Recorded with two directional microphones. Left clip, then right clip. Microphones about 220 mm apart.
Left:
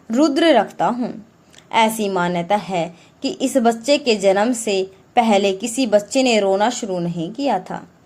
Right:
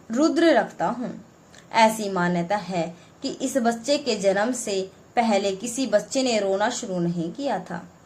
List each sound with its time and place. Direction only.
0.1 s a woman's voice: 25° left (ahead or behind)